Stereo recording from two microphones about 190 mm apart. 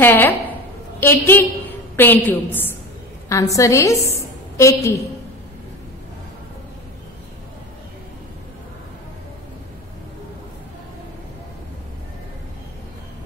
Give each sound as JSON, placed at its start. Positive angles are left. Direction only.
{"t": 0.0, "sound": "a woman's voice", "side_deg": 10}